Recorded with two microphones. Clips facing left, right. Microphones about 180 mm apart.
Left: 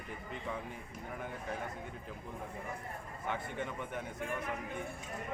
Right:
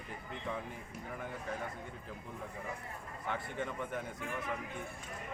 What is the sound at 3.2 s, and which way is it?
Speech, 15° left (ahead or behind).